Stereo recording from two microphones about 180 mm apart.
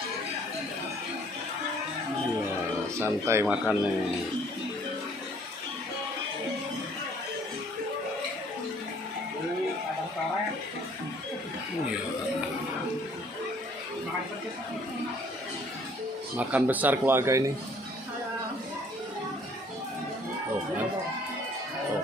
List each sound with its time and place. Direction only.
3.0 s speech: 15° right (ahead or behind)
16.3 s speech: 10° right (ahead or behind)